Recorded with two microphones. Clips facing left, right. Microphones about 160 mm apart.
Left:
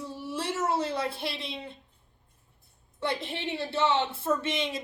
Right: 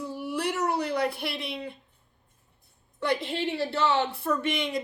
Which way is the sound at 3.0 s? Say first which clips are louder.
Right 4 dB; 25° left (ahead or behind).